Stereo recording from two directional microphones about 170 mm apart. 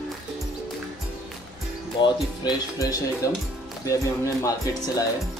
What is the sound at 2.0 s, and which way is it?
Speech, 25° left (ahead or behind).